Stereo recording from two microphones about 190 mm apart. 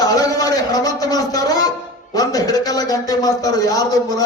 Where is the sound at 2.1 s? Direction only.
20° left (ahead or behind).